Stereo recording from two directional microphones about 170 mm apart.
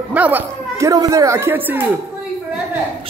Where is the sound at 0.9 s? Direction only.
20° right (ahead or behind).